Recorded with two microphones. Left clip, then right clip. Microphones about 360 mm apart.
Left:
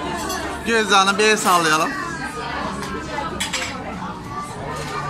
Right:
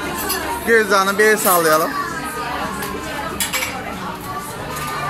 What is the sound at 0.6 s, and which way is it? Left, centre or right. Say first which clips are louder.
Speech: right 1 dB; centre.